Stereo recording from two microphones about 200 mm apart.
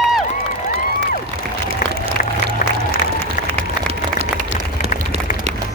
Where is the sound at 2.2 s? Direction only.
45° left (ahead or behind).